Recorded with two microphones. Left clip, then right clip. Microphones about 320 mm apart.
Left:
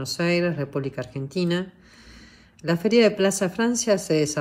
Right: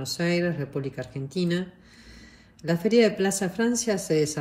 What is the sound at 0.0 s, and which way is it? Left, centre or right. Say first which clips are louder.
Speech: left 3 dB; centre.